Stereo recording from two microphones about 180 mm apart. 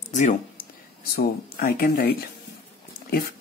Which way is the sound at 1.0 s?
55° left (ahead or behind).